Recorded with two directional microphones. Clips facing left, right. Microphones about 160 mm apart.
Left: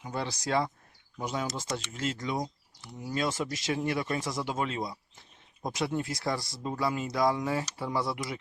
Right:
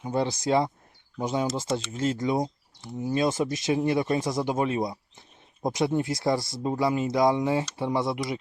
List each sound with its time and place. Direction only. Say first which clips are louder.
0.0 s speech: right 8 dB; 25° right (ahead or behind)